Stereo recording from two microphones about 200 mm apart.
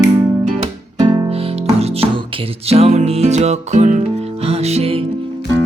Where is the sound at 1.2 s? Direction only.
30° right (ahead or behind).